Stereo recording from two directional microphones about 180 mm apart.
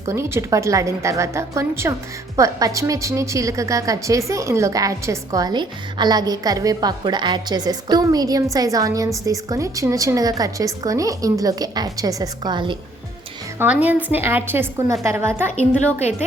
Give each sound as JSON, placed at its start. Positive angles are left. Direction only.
{"t": 0.1, "sound": "a woman's voice", "side_deg": -15}
{"t": 13.6, "sound": "a woman's voice", "side_deg": -10}
{"t": 15.4, "sound": "a woman's voice", "side_deg": 40}